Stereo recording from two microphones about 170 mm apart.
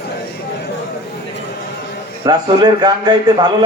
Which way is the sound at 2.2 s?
25° right (ahead or behind).